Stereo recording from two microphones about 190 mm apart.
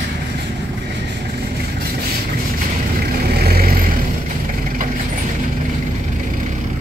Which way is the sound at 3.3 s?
55° right (ahead or behind).